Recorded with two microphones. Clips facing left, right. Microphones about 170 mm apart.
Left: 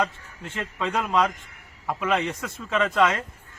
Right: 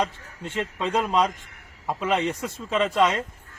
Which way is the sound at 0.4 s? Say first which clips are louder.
Right 2 dB; 25° right (ahead or behind).